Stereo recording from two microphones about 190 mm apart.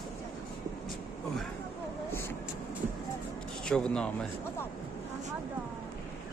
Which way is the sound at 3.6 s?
5° left (ahead or behind).